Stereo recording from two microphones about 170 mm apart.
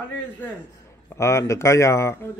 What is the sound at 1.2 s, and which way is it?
Speech, 15° left (ahead or behind).